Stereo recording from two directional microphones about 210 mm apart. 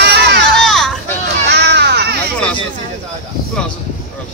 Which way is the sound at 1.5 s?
55° right (ahead or behind).